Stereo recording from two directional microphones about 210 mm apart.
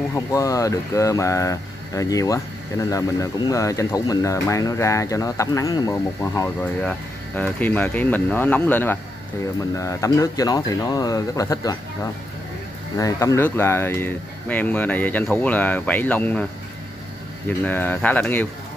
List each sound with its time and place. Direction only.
0.1 s speech: 15° left (ahead or behind)
17.5 s speech: 10° left (ahead or behind)